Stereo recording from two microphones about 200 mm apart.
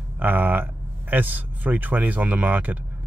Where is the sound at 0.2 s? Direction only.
10° right (ahead or behind).